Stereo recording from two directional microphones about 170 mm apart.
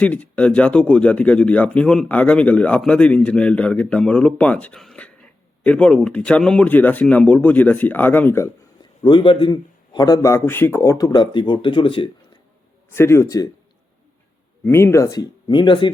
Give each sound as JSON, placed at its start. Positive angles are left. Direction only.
{"t": 0.0, "sound": "speech", "side_deg": 10}
{"t": 9.0, "sound": "a man's voice", "side_deg": 30}
{"t": 12.9, "sound": "speech", "side_deg": 15}
{"t": 14.6, "sound": "a man's voice", "side_deg": 15}